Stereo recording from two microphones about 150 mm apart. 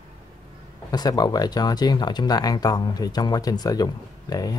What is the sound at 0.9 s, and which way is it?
Speech, 25° left (ahead or behind).